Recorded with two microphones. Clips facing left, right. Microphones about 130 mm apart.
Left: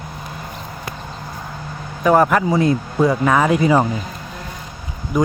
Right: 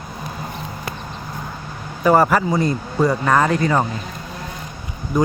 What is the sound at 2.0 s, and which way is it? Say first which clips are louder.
Speech: left 1 dB; centre (ahead or behind).